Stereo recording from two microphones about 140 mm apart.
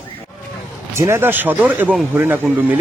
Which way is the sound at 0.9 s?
20° right (ahead or behind).